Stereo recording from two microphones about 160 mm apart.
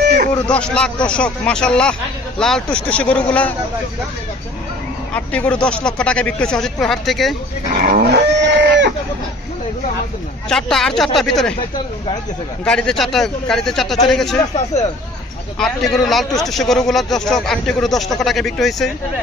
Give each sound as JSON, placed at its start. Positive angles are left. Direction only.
{"t": 0.5, "sound": "speech", "side_deg": 5}
{"t": 5.1, "sound": "a man's voice", "side_deg": 10}
{"t": 7.8, "sound": "livestock", "side_deg": -70}
{"t": 10.5, "sound": "a man's voice", "side_deg": 5}
{"t": 12.6, "sound": "a man's voice", "side_deg": 5}
{"t": 15.6, "sound": "a man's voice", "side_deg": 5}